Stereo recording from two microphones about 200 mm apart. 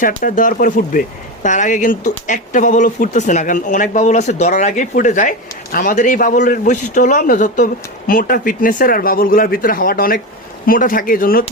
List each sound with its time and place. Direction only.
0.0 s a man's voice: 40° left (ahead or behind)